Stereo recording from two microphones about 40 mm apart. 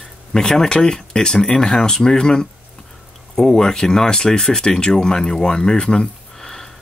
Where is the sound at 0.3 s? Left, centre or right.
Centre.